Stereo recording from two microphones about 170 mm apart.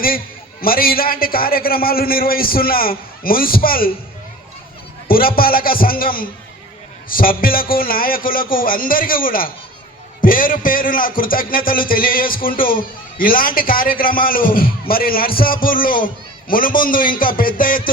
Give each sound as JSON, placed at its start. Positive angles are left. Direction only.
{"t": 0.6, "sound": "a man's voice", "side_deg": 60}
{"t": 5.0, "sound": "a man's voice", "side_deg": 60}